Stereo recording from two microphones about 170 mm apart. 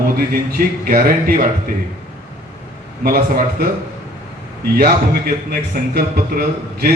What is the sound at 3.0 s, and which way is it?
Speech, 60° right (ahead or behind).